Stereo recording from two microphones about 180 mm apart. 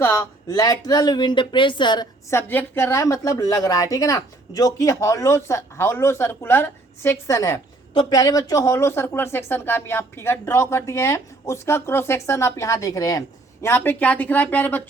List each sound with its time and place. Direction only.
0.0 s speech: 15° left (ahead or behind)
2.5 s speech: 10° left (ahead or behind)